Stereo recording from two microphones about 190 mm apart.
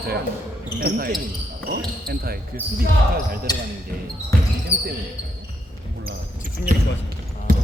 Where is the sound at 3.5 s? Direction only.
20° left (ahead or behind).